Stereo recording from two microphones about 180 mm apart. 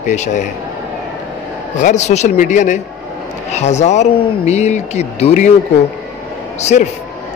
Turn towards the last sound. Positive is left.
turn(degrees=40)  # may be behind; listen again after turning